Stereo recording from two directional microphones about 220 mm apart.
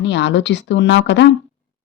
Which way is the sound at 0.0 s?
50° left (ahead or behind).